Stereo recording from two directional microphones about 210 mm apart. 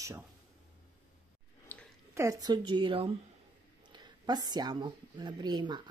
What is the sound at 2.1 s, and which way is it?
Speech, 15° right (ahead or behind).